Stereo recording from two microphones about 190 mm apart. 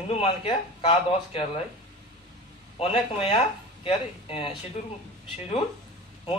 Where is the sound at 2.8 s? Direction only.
30° left (ahead or behind).